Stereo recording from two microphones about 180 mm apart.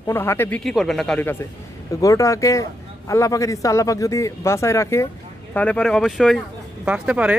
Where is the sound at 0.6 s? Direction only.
Centre (ahead or behind).